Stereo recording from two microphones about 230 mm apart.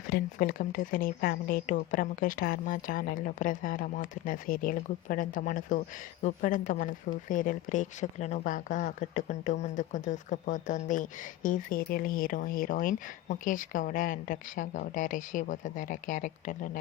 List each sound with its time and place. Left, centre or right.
0.1 s speech: left